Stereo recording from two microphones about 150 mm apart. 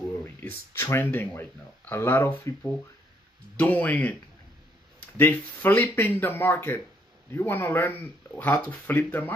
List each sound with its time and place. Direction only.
0.4 s speech: 15° left (ahead or behind)